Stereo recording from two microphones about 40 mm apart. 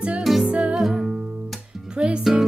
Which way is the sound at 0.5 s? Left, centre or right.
Right.